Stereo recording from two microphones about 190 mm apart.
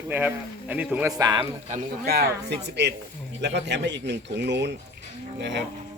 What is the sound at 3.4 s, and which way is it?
Speech, 65° right (ahead or behind).